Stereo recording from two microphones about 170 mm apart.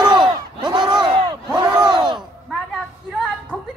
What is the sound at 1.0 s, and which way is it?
Battle cry, 25° right (ahead or behind).